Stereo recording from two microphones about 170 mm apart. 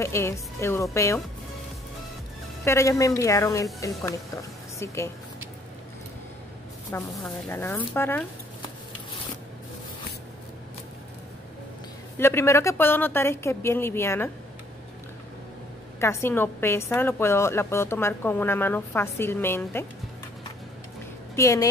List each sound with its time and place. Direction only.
0.0 s a woman's voice: 15° left (ahead or behind)
2.6 s a woman's voice: 15° left (ahead or behind)
6.9 s a woman's voice: 15° left (ahead or behind)
12.2 s a woman's voice: 15° left (ahead or behind)
16.0 s a woman's voice: 15° left (ahead or behind)
21.4 s speech: 20° left (ahead or behind)